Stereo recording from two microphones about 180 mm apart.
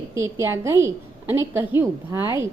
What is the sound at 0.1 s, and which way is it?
A woman's voice, 15° right (ahead or behind).